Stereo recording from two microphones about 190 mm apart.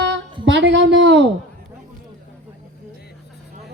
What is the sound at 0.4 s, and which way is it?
Speech, 65° right (ahead or behind).